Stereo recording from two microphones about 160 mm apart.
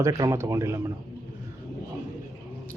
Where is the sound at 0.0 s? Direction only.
20° right (ahead or behind).